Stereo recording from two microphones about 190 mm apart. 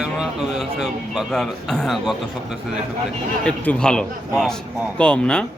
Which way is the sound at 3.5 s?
5° left (ahead or behind).